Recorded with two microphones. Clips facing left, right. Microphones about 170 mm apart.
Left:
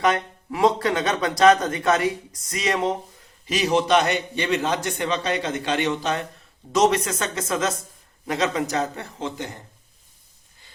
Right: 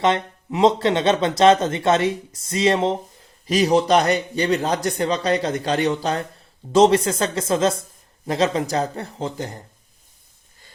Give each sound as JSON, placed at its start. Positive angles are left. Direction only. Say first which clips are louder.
{"t": 0.0, "sound": "speech", "louder": "right 2 dB", "side_deg": -25}
{"t": 3.4, "sound": "a man's voice", "louder": "right 4 dB", "side_deg": -40}